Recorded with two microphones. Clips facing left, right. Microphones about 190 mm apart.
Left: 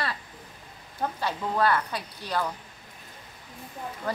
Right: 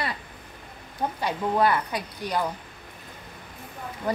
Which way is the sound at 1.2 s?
15° right (ahead or behind).